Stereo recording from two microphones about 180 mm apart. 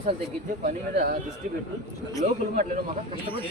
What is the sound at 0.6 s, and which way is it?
Speech, 50° right (ahead or behind).